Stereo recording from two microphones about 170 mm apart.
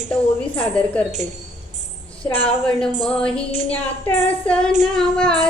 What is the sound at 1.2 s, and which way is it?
Speech, 45° right (ahead or behind).